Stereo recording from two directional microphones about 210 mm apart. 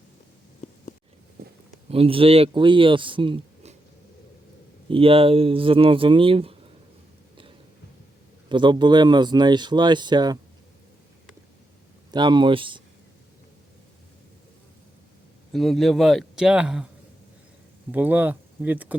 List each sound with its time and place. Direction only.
1.9 s speech: 25° right (ahead or behind)
4.9 s speech: 25° right (ahead or behind)
8.4 s speech: 20° right (ahead or behind)
12.1 s speech: 20° right (ahead or behind)
15.5 s a man's voice: centre (ahead or behind)
17.9 s speech: 10° right (ahead or behind)